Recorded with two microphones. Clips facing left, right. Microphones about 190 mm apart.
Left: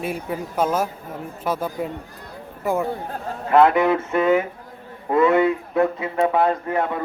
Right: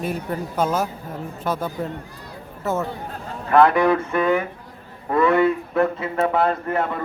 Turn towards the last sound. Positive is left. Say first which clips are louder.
# left 1 dB
turn(degrees=15)  # may be behind; listen again after turning